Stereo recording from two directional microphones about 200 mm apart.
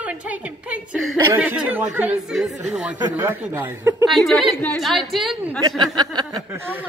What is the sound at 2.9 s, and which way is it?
Speech, 15° right (ahead or behind).